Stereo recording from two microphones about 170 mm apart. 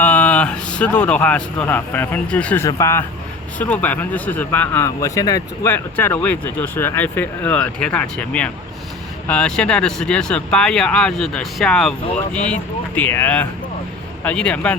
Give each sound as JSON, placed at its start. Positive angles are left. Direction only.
{"t": 0.0, "sound": "speech", "side_deg": 10}
{"t": 2.6, "sound": "speech", "side_deg": 20}